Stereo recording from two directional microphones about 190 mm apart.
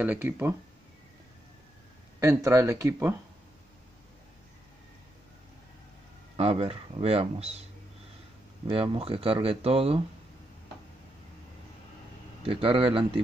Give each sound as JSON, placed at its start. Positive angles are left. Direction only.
{"t": 0.0, "sound": "speech", "side_deg": -10}
{"t": 2.1, "sound": "speech", "side_deg": -15}
{"t": 6.3, "sound": "speech", "side_deg": -30}
{"t": 8.6, "sound": "speech", "side_deg": -30}
{"t": 12.4, "sound": "speech", "side_deg": -30}